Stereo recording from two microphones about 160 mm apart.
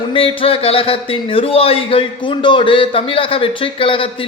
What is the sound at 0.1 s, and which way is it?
Speech, 35° left (ahead or behind).